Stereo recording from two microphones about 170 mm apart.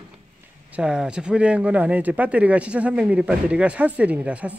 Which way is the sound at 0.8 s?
5° right (ahead or behind).